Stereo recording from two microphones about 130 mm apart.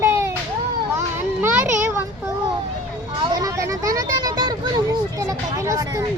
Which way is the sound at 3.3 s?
25° right (ahead or behind).